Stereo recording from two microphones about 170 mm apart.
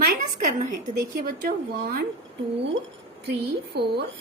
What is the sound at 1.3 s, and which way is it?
Speech, 60° right (ahead or behind).